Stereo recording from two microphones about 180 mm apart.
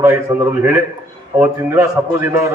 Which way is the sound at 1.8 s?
15° right (ahead or behind).